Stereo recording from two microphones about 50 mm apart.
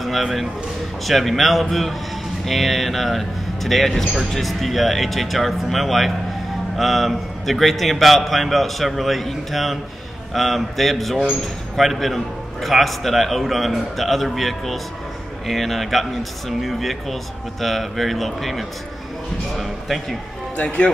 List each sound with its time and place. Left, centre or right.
0.0 s speech: centre
20.5 s speech: left